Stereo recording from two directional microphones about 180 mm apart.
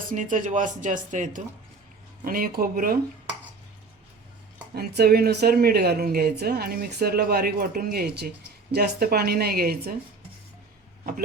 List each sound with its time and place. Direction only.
0.1 s speech: 45° right (ahead or behind)
4.7 s speech: 60° right (ahead or behind)